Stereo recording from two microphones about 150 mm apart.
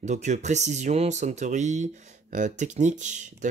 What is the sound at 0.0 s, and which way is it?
Speech, 50° right (ahead or behind).